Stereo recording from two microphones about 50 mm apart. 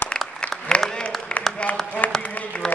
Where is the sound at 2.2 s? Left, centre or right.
Left.